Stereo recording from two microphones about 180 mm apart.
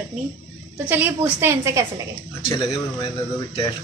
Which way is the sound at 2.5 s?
30° left (ahead or behind).